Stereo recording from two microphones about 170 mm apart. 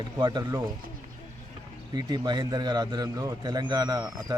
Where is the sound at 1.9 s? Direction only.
25° right (ahead or behind).